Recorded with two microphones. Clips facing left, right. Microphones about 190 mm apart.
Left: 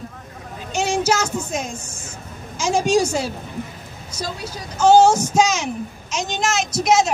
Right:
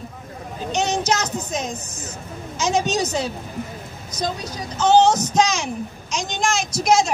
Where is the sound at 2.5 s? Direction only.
10° left (ahead or behind).